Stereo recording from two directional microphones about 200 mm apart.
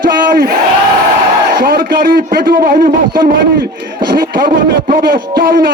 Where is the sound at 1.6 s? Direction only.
50° right (ahead or behind).